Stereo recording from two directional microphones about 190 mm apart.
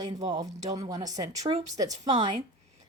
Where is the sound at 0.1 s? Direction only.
20° right (ahead or behind).